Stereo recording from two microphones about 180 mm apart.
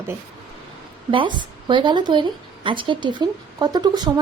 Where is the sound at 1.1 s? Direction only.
25° right (ahead or behind).